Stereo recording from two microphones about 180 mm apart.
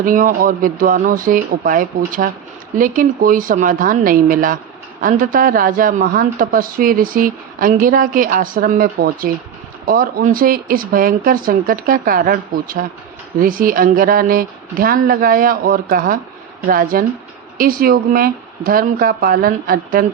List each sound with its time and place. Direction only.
0.0 s speech: 50° right (ahead or behind)